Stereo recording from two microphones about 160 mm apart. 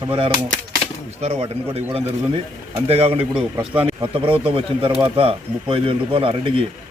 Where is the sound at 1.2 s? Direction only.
35° right (ahead or behind).